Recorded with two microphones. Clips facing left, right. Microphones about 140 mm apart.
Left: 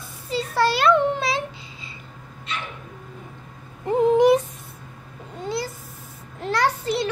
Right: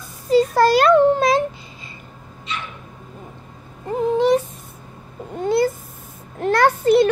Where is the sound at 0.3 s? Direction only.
45° right (ahead or behind).